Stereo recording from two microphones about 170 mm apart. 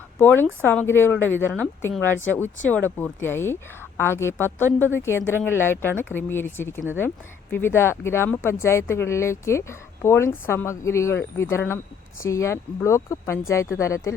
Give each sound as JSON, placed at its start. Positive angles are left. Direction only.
{"t": 0.2, "sound": "speech", "side_deg": 10}